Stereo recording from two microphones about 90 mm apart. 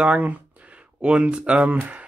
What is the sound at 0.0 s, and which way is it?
Speech, 15° right (ahead or behind).